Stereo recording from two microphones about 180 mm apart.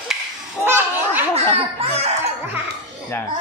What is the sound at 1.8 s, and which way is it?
Music, 35° right (ahead or behind).